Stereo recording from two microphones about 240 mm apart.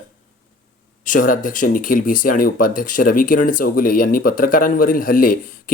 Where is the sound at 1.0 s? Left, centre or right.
Left.